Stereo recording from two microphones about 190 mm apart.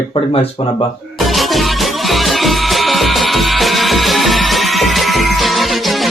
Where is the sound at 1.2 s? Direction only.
Centre (ahead or behind).